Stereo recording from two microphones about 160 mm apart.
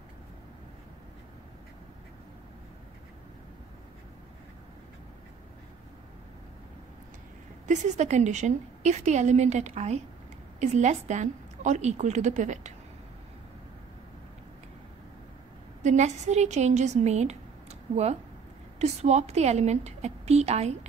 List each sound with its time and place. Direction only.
7.6 s a woman's voice: 50° right (ahead or behind)
15.8 s a woman's voice: 45° right (ahead or behind)